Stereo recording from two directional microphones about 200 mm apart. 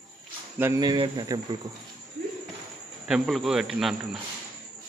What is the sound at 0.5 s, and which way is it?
Speech, 15° right (ahead or behind).